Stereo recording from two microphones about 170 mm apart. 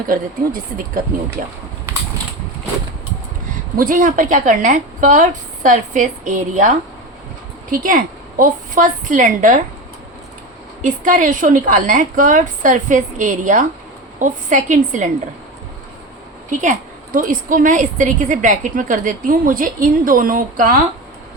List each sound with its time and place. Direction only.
3.8 s a woman's voice: 50° right (ahead or behind)
10.8 s a woman's voice: 50° right (ahead or behind)
16.5 s a woman's voice: 50° right (ahead or behind)